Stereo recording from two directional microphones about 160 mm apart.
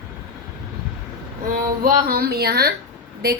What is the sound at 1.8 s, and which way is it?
Speech, 70° right (ahead or behind).